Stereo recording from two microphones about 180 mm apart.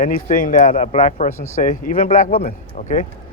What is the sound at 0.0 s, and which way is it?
Speech, 50° left (ahead or behind).